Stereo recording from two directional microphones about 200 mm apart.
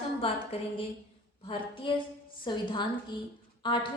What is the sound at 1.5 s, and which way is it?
A woman's voice, 25° left (ahead or behind).